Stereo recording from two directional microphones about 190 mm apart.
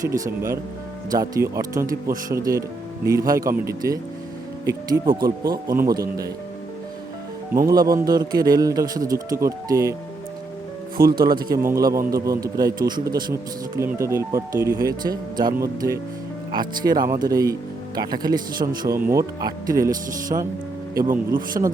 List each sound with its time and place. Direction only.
0.0 s a man's voice: 15° right (ahead or behind)
7.5 s speech: 20° right (ahead or behind)
10.9 s speech: 50° right (ahead or behind)
11.5 s a man's voice: 15° right (ahead or behind)
20.3 s speech: 35° right (ahead or behind)
20.9 s speech: 15° right (ahead or behind)
21.6 s speech: 30° right (ahead or behind)